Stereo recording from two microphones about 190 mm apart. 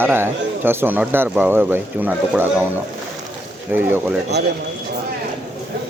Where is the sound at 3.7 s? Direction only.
10° right (ahead or behind).